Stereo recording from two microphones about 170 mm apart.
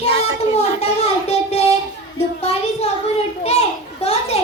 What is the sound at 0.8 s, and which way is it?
Child singing, 40° left (ahead or behind).